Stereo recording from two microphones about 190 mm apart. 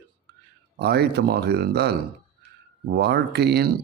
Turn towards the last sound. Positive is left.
turn(degrees=-60)  # may be behind; listen again after turning